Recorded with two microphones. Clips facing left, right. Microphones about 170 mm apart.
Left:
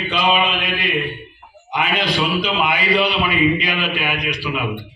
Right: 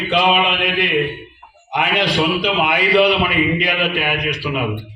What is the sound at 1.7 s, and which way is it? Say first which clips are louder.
A man's voice: right 2 dB; 65° right (ahead or behind).